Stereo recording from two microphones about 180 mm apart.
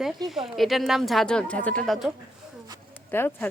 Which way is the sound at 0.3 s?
Centre (ahead or behind).